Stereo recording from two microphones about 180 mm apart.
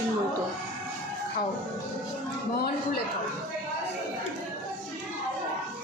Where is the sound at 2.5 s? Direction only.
60° left (ahead or behind).